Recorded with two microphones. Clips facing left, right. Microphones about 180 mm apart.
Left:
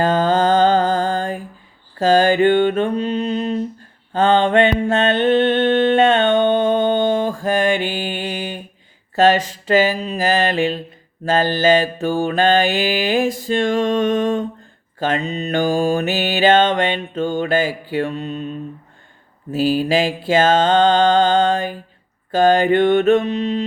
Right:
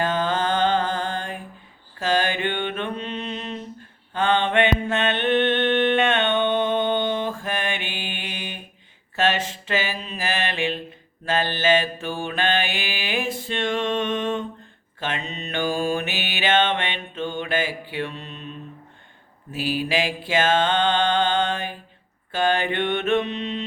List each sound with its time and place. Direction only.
0.0 s music: 40° left (ahead or behind)
2.0 s mantra: 40° left (ahead or behind)